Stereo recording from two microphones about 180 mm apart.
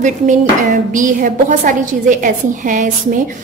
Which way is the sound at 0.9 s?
50° right (ahead or behind).